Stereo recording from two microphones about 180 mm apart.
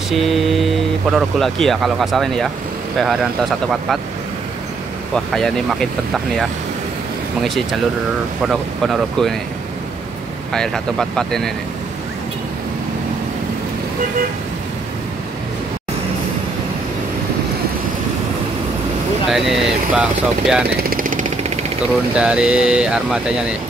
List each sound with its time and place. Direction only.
0.1 s speech: centre (ahead or behind)
5.1 s speech: centre (ahead or behind)
10.5 s speech: 5° left (ahead or behind)
19.3 s speech: centre (ahead or behind)
20.7 s a sound: 50° right (ahead or behind)
22.1 s speech: 5° right (ahead or behind)